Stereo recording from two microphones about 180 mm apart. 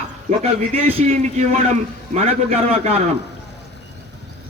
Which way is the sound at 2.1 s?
35° right (ahead or behind).